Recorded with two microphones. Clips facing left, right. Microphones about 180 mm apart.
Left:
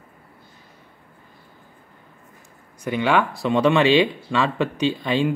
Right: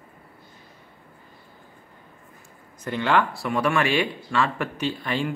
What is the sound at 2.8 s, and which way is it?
Speech, 15° left (ahead or behind).